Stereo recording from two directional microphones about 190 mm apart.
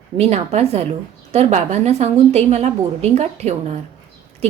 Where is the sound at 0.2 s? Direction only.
35° right (ahead or behind).